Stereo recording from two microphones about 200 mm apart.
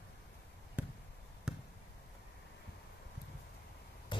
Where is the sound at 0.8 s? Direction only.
5° right (ahead or behind).